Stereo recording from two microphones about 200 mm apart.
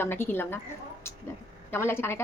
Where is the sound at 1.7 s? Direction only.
10° left (ahead or behind).